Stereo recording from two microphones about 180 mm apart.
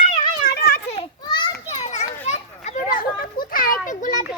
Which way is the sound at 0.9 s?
30° left (ahead or behind).